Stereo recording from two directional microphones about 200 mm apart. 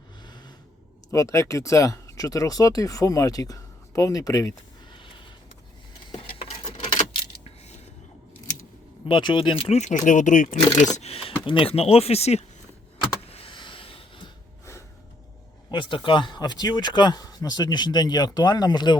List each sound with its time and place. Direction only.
0.2 s a sound: 20° left (ahead or behind)
1.1 s speech: 15° left (ahead or behind)
6.7 s keys jangling: 25° left (ahead or behind)
9.0 s speech: 25° left (ahead or behind)
13.3 s rub: 25° left (ahead or behind)
14.6 s a sound: 15° left (ahead or behind)
15.7 s speech: 25° left (ahead or behind)